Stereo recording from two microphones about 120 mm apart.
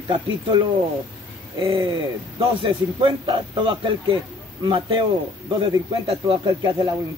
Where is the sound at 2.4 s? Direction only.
45° right (ahead or behind).